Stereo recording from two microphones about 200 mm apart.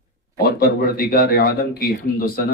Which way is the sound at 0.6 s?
45° left (ahead or behind).